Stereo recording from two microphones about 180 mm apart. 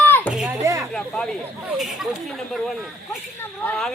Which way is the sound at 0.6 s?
15° right (ahead or behind).